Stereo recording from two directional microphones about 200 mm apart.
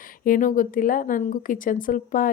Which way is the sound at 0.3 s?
45° left (ahead or behind).